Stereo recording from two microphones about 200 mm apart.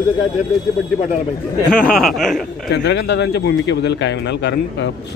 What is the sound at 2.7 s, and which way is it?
A man's voice, 60° left (ahead or behind).